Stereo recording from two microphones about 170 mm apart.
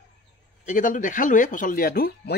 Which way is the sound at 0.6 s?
50° left (ahead or behind).